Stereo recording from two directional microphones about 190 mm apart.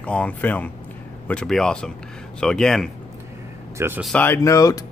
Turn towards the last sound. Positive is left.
turn(degrees=15)  # may be behind; listen again after turning